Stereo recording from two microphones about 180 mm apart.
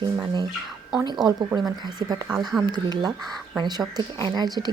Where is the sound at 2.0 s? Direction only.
20° right (ahead or behind).